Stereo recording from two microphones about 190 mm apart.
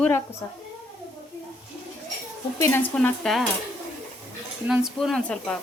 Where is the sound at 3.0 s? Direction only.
5° left (ahead or behind).